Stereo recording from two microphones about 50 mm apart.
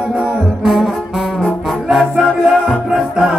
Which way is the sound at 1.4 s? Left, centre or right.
Centre.